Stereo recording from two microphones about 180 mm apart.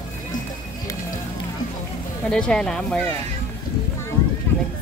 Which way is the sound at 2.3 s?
5° left (ahead or behind).